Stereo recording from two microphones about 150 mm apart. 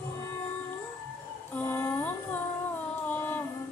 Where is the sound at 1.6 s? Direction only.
15° left (ahead or behind).